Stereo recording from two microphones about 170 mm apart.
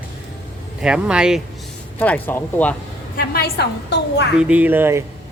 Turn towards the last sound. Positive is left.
turn(degrees=-10)  # may be behind; listen again after turning